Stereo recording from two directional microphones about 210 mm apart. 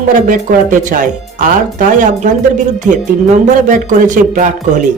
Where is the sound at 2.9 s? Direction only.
35° right (ahead or behind).